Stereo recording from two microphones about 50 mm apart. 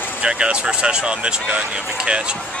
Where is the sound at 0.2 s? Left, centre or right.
Right.